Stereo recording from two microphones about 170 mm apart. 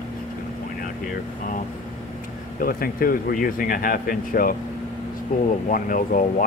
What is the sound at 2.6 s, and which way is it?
Speech, 55° left (ahead or behind).